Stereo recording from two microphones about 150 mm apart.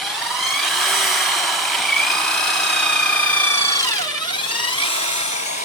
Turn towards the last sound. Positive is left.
turn(degrees=50)  # may be behind; listen again after turning